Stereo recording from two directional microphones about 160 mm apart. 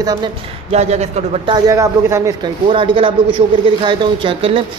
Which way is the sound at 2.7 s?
30° right (ahead or behind).